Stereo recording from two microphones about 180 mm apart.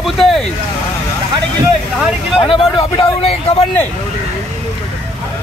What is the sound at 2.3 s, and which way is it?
Speech, 30° left (ahead or behind).